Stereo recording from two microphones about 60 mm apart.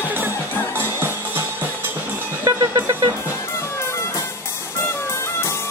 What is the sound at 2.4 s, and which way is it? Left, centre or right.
Music, right.